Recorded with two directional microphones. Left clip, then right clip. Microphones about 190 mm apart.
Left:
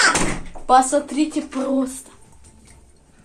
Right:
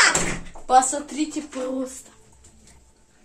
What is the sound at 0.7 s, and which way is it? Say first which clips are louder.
Speech: left 3 dB; 40° left (ahead or behind).